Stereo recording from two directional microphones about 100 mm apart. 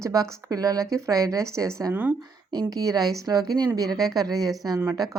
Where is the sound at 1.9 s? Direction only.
20° right (ahead or behind).